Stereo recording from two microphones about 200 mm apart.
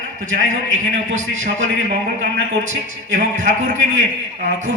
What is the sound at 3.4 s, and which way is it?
Speech, 40° right (ahead or behind).